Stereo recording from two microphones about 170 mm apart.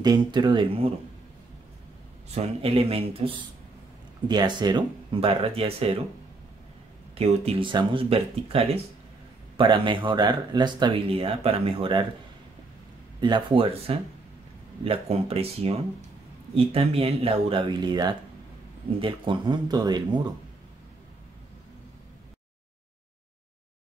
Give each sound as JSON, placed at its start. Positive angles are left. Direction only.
{"t": 0.0, "sound": "speech", "side_deg": -25}
{"t": 2.3, "sound": "speech", "side_deg": -35}
{"t": 7.2, "sound": "speech", "side_deg": -30}
{"t": 13.2, "sound": "speech", "side_deg": -25}